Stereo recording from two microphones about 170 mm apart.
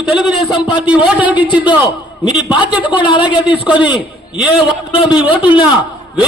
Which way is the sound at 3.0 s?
25° left (ahead or behind).